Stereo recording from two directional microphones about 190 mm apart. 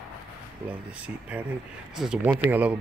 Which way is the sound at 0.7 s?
5° right (ahead or behind).